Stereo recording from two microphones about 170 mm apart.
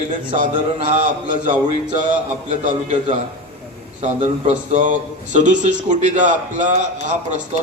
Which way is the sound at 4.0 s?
40° right (ahead or behind).